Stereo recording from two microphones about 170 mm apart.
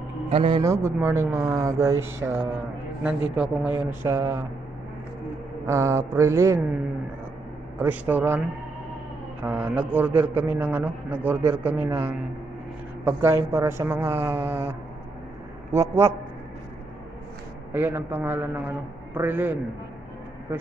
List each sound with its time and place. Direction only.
0.3 s a man's voice: 35° right (ahead or behind)
0.6 s a man's voice: 15° right (ahead or behind)
5.7 s a man's voice: 15° right (ahead or behind)
7.8 s a man's voice: 10° right (ahead or behind)
17.7 s a man's voice: 10° right (ahead or behind)